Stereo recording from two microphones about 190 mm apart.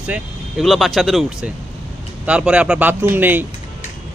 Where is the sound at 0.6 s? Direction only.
Centre (ahead or behind).